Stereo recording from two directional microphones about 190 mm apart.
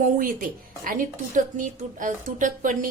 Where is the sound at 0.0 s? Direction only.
45° right (ahead or behind).